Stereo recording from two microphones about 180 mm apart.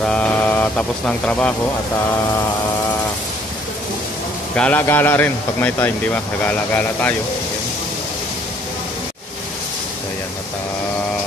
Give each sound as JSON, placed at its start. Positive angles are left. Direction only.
{"t": 0.0, "sound": "speech", "side_deg": 5}
{"t": 4.6, "sound": "speech", "side_deg": 10}